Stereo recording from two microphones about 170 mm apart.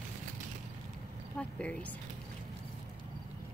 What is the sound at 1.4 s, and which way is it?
Speech, 5° left (ahead or behind).